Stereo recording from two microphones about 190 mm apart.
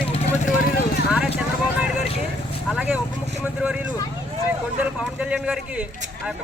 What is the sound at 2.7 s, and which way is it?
Speech, 5° right (ahead or behind).